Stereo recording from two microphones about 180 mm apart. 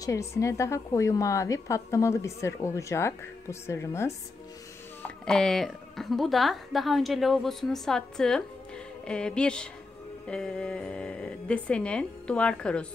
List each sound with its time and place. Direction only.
0.0 s a woman's voice: 15° left (ahead or behind)
5.0 s a woman's voice: 5° left (ahead or behind)